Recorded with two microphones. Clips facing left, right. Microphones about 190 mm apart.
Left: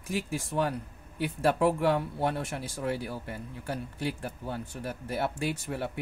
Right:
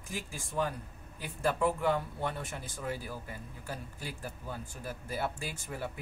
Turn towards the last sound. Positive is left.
turn(degrees=70)  # may be behind; listen again after turning